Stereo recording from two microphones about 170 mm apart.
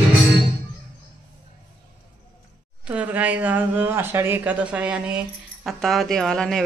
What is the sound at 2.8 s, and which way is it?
Speech, 10° right (ahead or behind).